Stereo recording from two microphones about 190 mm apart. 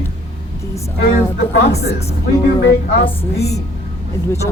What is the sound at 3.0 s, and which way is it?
Speech, 30° left (ahead or behind).